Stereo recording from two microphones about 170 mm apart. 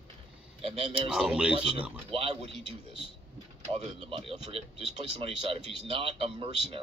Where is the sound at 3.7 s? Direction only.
35° right (ahead or behind).